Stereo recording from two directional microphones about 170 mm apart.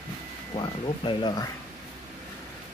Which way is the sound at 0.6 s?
30° left (ahead or behind).